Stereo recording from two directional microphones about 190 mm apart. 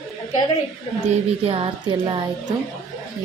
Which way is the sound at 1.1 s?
35° right (ahead or behind).